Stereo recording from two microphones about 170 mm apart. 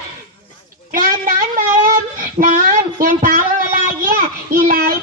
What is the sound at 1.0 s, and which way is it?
Child singing, 55° right (ahead or behind).